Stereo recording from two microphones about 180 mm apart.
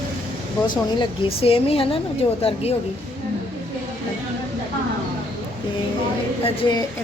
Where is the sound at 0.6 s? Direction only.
25° left (ahead or behind).